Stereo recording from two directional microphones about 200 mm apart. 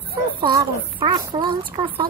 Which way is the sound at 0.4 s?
20° right (ahead or behind).